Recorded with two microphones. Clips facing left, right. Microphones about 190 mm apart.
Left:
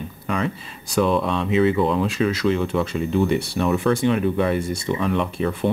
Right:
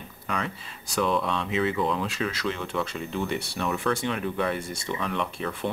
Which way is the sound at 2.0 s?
15° left (ahead or behind).